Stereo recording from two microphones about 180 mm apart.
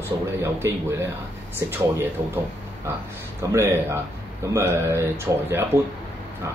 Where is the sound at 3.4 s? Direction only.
15° right (ahead or behind).